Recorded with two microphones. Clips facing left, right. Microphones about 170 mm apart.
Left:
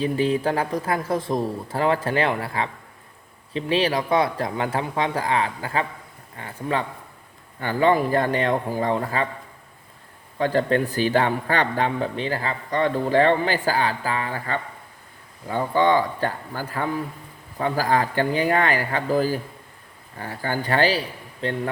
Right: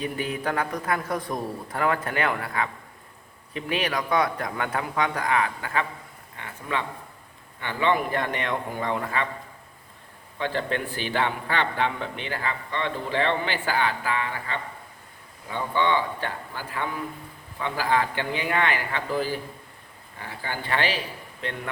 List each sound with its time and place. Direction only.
0.0 s speech: 30° left (ahead or behind)
10.3 s speech: 40° left (ahead or behind)